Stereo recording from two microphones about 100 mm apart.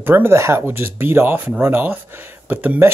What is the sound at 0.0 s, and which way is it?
Speech, 20° right (ahead or behind).